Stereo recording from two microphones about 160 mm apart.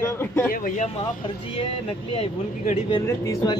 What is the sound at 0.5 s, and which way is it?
Speech, 55° left (ahead or behind).